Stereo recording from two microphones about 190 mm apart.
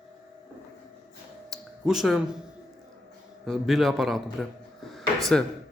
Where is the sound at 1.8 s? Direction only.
Centre (ahead or behind).